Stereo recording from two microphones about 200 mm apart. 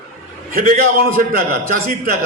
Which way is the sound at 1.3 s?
45° right (ahead or behind).